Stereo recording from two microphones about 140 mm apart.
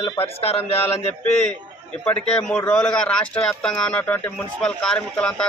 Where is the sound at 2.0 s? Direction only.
5° left (ahead or behind).